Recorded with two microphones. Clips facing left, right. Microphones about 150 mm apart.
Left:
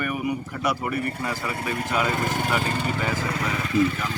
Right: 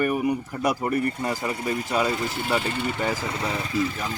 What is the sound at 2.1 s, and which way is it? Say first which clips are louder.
Speech: left 1 dB; 55° left (ahead or behind).